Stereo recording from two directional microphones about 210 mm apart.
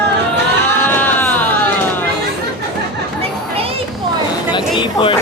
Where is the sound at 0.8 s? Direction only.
10° left (ahead or behind).